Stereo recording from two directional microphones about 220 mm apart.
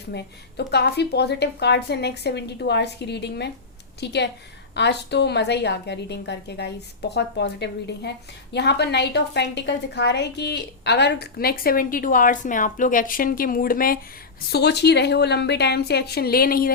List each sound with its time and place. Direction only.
0.1 s a woman's voice: 50° left (ahead or behind)